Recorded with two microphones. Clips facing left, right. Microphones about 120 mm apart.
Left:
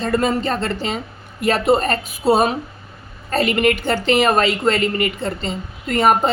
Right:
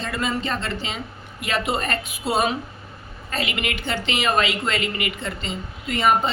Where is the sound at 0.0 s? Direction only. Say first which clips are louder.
Left 7 dB; 40° left (ahead or behind).